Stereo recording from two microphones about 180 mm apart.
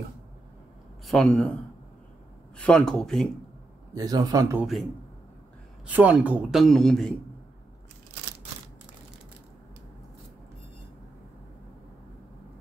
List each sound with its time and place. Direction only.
1.0 s speech: 5° left (ahead or behind)
3.9 s a man's voice: 20° right (ahead or behind)
5.9 s speech: 10° right (ahead or behind)